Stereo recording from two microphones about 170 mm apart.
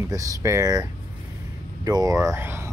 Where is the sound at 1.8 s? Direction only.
20° right (ahead or behind).